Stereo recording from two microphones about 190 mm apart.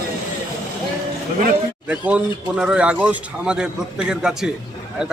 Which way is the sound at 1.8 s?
5° right (ahead or behind).